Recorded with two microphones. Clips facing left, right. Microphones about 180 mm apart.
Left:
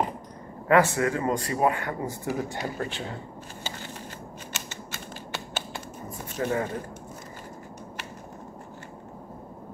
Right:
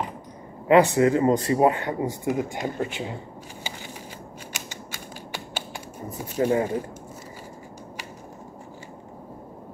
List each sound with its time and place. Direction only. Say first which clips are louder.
0.7 s speech: right 4 dB; 20° right (ahead or behind)
3.6 s crushing: even; 15° right (ahead or behind)
4.5 s typing: right 1 dB; 10° right (ahead or behind)
6.4 s speech: right 5 dB; 10° right (ahead or behind)